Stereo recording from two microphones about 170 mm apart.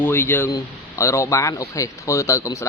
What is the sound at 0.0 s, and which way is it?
A man's voice, 10° left (ahead or behind).